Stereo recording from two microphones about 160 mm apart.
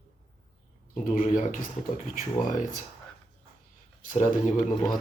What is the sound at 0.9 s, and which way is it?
Speech, 55° left (ahead or behind).